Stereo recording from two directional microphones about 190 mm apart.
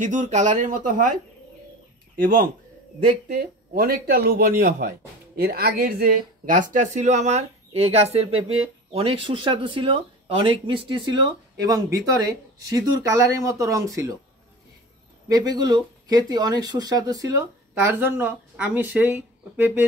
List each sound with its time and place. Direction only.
0.0 s speech: 40° right (ahead or behind)
2.1 s speech: 45° right (ahead or behind); by 14.1 s 15° right (ahead or behind)
15.2 s speech: 20° right (ahead or behind)